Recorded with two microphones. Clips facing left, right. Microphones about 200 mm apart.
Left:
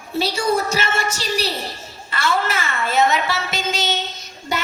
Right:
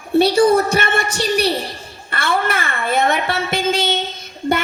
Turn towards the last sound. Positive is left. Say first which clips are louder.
# right 6 dB
turn(degrees=-55)  # may be behind; listen again after turning